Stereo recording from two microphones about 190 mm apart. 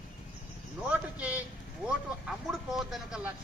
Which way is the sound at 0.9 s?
5° right (ahead or behind).